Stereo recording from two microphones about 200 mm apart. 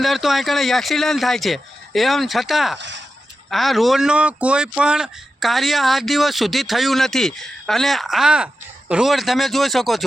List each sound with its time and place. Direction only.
0.0 s speech: centre (ahead or behind)
2.7 s speech: 65° right (ahead or behind)
3.5 s speech: centre (ahead or behind)